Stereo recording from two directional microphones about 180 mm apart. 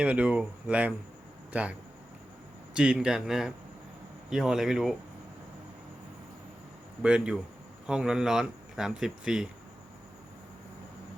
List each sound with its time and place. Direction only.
0.0 s speech: 5° right (ahead or behind)
2.7 s speech: 5° right (ahead or behind)
7.0 s speech: 5° right (ahead or behind)